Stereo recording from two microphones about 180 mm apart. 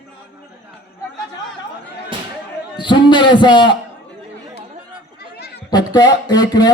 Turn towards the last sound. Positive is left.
turn(degrees=20)  # may be behind; listen again after turning